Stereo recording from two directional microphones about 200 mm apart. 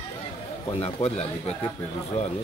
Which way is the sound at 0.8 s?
30° left (ahead or behind).